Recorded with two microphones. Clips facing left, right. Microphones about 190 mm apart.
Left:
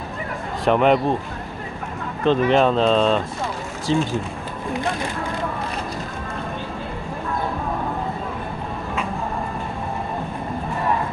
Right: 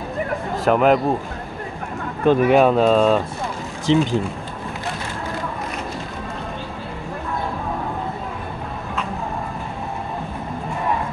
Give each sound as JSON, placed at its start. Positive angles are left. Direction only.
{"t": 0.7, "sound": "a man's voice", "side_deg": -5}
{"t": 2.2, "sound": "speech", "side_deg": -10}
{"t": 3.9, "sound": "speech", "side_deg": -20}